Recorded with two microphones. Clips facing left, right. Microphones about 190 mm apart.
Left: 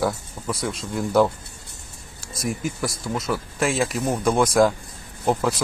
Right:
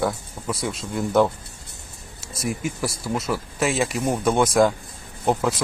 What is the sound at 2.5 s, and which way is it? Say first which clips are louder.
Speech: even; centre (ahead or behind).